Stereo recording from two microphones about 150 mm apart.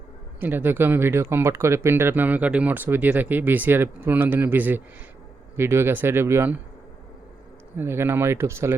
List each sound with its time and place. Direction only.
0.3 s speech: 15° right (ahead or behind)
7.8 s speech: 15° right (ahead or behind)